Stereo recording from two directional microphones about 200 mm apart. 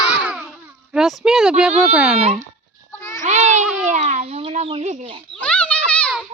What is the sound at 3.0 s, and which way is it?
Goat, 15° left (ahead or behind).